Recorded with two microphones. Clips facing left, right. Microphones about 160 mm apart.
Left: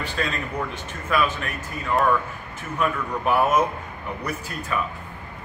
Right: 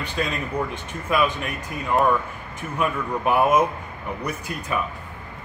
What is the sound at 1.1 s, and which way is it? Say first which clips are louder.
Speech: right 1 dB; 10° right (ahead or behind).